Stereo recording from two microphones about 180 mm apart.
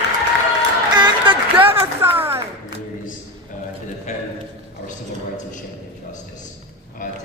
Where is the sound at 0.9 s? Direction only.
25° right (ahead or behind).